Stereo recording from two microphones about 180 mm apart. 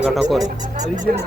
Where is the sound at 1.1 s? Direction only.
55° right (ahead or behind).